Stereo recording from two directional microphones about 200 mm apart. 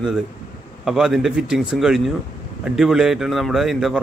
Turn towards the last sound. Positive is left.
turn(degrees=-5)  # may be behind; listen again after turning